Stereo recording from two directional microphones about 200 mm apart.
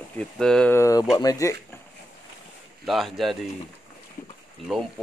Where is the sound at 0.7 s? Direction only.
15° left (ahead or behind).